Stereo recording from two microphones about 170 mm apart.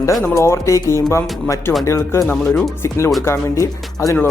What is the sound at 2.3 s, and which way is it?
Speech, centre (ahead or behind).